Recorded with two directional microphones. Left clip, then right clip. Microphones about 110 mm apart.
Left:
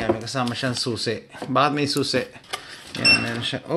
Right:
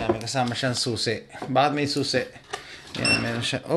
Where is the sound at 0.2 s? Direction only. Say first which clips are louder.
Even; 20° left (ahead or behind).